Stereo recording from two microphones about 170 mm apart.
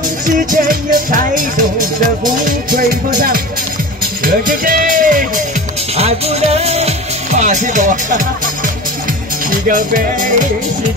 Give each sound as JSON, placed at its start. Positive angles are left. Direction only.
{"t": 0.3, "sound": "speech", "side_deg": -50}
{"t": 2.4, "sound": "music", "side_deg": -55}
{"t": 3.2, "sound": "speech", "side_deg": -55}
{"t": 4.2, "sound": "music", "side_deg": -55}
{"t": 5.9, "sound": "music", "side_deg": -35}
{"t": 9.7, "sound": "speech", "side_deg": -50}